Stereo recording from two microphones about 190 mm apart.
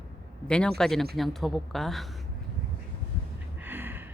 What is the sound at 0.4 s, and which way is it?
Speech, 5° left (ahead or behind).